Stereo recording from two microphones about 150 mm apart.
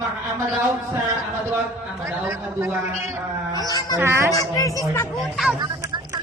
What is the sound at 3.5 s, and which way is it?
Speech, 25° left (ahead or behind).